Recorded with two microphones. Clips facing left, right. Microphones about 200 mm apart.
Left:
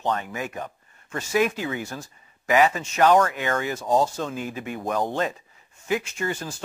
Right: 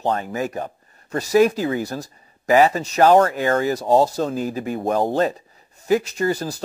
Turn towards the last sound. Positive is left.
turn(degrees=-35)  # may be behind; listen again after turning